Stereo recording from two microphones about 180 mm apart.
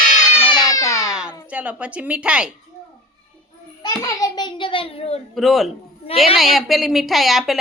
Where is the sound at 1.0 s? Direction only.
5° right (ahead or behind).